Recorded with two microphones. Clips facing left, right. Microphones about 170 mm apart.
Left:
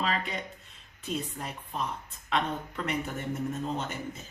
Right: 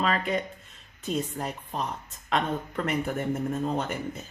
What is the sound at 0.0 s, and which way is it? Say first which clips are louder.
Speech: right 4 dB; 50° right (ahead or behind).